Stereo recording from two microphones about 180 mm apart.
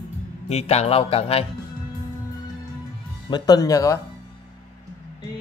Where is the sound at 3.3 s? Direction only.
20° left (ahead or behind).